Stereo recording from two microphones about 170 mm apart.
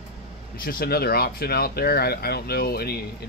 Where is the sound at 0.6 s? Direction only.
60° left (ahead or behind).